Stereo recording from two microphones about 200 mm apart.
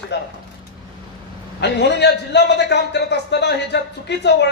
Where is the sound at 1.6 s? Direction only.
60° left (ahead or behind).